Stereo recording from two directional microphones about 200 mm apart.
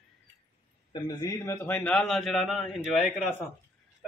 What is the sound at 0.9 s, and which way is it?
A man's voice, 20° left (ahead or behind).